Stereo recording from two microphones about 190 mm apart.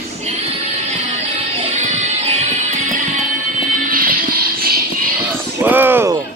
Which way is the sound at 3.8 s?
45° right (ahead or behind).